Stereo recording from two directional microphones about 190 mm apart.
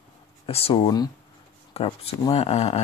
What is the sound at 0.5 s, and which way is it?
Speech, 30° left (ahead or behind).